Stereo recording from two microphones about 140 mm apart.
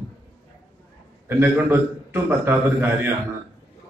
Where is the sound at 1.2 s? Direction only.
15° right (ahead or behind).